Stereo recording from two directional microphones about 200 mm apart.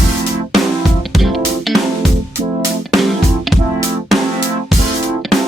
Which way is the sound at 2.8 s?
Centre (ahead or behind).